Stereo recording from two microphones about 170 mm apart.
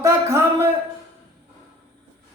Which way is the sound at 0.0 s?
15° right (ahead or behind).